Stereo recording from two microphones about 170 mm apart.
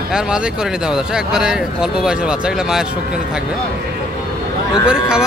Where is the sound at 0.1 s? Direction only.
5° right (ahead or behind).